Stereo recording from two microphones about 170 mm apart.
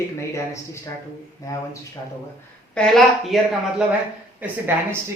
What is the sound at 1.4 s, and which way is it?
Speech, 20° left (ahead or behind).